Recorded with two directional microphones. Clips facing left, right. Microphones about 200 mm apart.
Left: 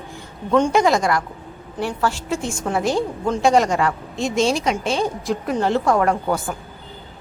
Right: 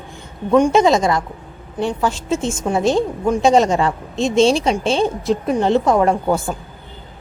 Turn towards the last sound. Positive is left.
turn(degrees=-25)  # may be behind; listen again after turning